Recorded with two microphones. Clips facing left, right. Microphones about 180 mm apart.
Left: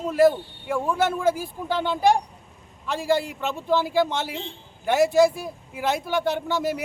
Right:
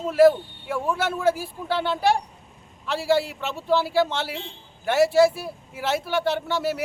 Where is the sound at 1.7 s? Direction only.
15° left (ahead or behind).